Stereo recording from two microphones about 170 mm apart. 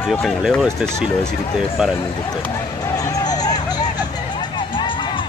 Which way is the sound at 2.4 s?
20° left (ahead or behind).